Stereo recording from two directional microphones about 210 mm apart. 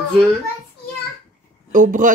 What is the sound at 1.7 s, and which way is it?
Speech, 40° right (ahead or behind).